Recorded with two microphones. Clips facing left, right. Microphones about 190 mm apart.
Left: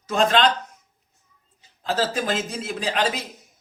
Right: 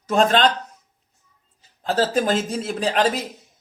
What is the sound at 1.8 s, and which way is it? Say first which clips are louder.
Speech: right 4 dB; 45° right (ahead or behind).